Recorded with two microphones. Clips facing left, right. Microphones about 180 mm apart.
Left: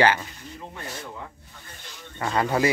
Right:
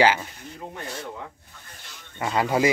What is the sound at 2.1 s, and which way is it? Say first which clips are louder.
Speech: right 1 dB; 10° right (ahead or behind).